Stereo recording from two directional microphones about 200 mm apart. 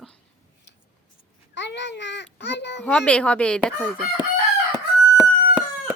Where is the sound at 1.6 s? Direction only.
60° left (ahead or behind).